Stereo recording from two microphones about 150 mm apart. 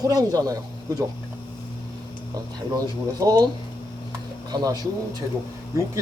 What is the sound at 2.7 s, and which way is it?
Speech, 25° right (ahead or behind).